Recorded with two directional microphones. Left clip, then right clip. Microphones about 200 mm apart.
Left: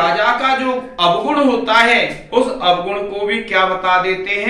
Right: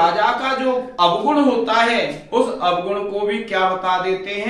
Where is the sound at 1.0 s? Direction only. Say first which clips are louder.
Left 2 dB; 15° right (ahead or behind).